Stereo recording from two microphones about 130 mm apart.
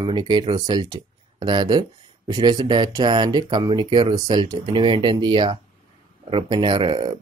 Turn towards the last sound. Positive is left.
turn(degrees=-40)  # may be behind; listen again after turning